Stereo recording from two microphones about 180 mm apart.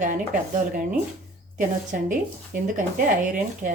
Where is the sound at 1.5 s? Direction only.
45° right (ahead or behind).